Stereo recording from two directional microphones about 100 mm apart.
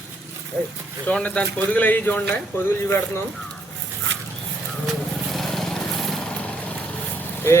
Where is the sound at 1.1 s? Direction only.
15° left (ahead or behind).